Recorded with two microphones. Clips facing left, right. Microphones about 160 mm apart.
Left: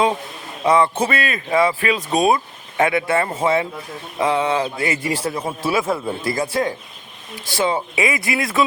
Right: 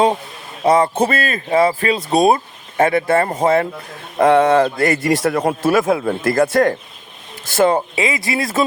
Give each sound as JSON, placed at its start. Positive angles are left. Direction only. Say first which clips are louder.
{"t": 0.6, "sound": "speech", "louder": "right 3 dB", "side_deg": -40}
{"t": 4.2, "sound": "a man's voice", "louder": "right 7 dB", "side_deg": -55}
{"t": 7.9, "sound": "speech", "louder": "right 1 dB", "side_deg": -25}